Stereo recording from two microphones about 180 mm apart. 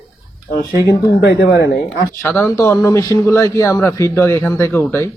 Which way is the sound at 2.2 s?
10° left (ahead or behind).